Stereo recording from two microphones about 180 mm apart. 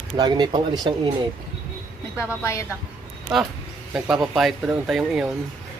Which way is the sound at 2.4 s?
15° left (ahead or behind).